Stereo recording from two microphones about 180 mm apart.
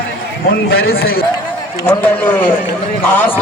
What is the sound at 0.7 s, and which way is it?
Speech, 65° left (ahead or behind).